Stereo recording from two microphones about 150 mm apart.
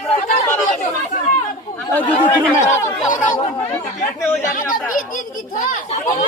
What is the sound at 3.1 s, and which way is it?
Speech, 55° left (ahead or behind).